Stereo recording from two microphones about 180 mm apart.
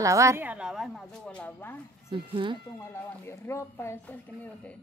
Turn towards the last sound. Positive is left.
turn(degrees=15)  # may be behind; listen again after turning